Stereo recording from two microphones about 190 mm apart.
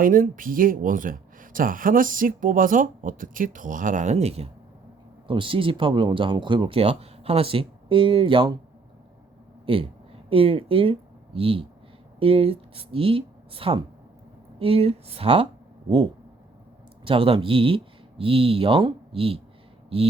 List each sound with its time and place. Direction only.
0.0 s speech: 45° right (ahead or behind); by 8.5 s 25° right (ahead or behind)
9.6 s speech: 30° right (ahead or behind)
17.0 s speech: 30° right (ahead or behind)